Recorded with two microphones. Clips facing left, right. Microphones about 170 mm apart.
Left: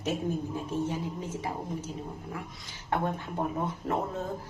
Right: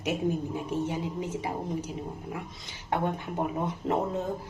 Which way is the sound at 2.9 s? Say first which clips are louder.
Right 1 dB; 15° right (ahead or behind).